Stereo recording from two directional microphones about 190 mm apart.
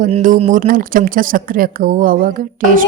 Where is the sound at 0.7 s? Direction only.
45° right (ahead or behind).